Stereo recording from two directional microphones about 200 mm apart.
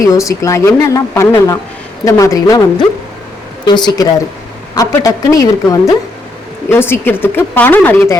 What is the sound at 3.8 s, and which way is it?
Speech, 20° left (ahead or behind).